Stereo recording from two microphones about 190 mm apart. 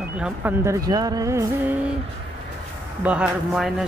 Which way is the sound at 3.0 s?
5° right (ahead or behind).